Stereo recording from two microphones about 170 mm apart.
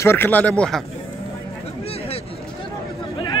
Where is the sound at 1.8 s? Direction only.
35° left (ahead or behind).